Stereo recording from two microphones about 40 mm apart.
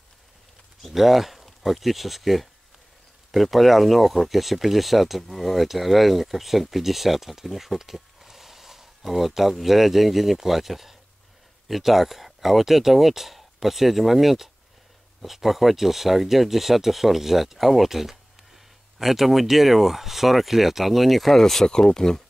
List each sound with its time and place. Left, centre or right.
0.8 s speech: centre